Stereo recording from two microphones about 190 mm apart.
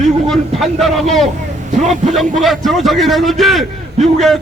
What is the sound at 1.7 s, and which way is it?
Speech, 40° right (ahead or behind).